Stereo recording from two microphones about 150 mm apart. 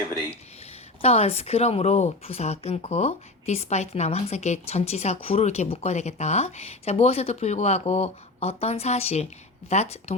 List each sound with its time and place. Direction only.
1.0 s speech: 45° left (ahead or behind)